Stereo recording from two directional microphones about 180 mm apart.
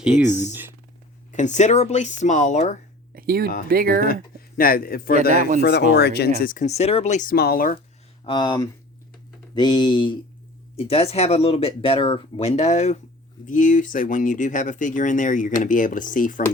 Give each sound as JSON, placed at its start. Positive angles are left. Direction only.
{"t": 0.2, "sound": "speech", "side_deg": -10}
{"t": 1.3, "sound": "speech", "side_deg": 40}
{"t": 3.2, "sound": "speech", "side_deg": -55}
{"t": 4.0, "sound": "speech", "side_deg": 55}
{"t": 6.4, "sound": "speech", "side_deg": 45}
{"t": 8.2, "sound": "speech", "side_deg": 25}